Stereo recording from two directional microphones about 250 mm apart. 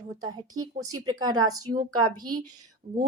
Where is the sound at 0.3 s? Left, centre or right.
Centre.